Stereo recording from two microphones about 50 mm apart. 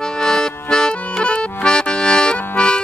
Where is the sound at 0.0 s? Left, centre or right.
Centre.